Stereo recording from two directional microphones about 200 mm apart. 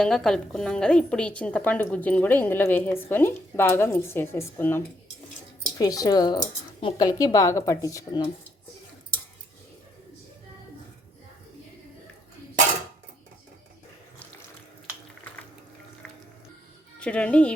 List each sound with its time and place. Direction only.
0.0 s a woman's voice: 5° left (ahead or behind)
5.8 s a woman's voice: 20° left (ahead or behind)
17.0 s speech: 5° left (ahead or behind)